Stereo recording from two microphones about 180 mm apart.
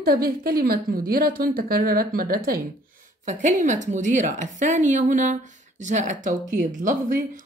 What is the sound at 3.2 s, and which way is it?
A woman's voice, 45° right (ahead or behind).